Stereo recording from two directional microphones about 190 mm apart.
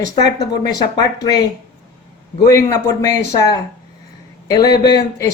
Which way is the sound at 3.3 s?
20° left (ahead or behind).